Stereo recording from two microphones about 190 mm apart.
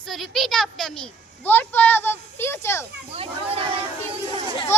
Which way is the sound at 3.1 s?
30° right (ahead or behind).